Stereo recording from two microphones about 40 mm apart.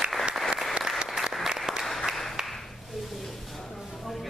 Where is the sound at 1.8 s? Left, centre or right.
Centre.